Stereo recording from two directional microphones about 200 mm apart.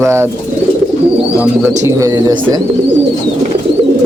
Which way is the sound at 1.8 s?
15° right (ahead or behind).